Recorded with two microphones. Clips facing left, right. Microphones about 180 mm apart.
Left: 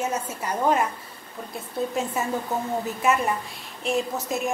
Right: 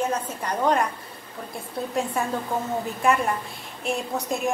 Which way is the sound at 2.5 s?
10° left (ahead or behind).